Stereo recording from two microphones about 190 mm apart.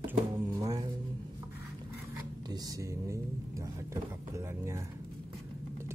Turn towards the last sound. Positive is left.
turn(degrees=-15)  # may be behind; listen again after turning